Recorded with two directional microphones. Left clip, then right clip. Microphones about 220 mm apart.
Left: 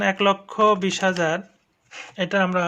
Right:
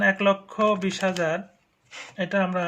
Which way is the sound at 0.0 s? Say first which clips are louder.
Left 1 dB; 35° left (ahead or behind).